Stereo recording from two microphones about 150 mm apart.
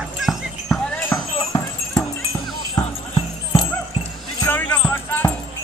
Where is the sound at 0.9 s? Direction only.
15° left (ahead or behind).